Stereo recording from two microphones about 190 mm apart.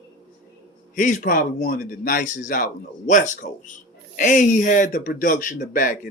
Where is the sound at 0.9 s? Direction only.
45° left (ahead or behind).